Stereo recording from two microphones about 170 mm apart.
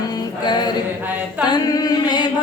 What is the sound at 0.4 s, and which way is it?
Mantra, 25° left (ahead or behind).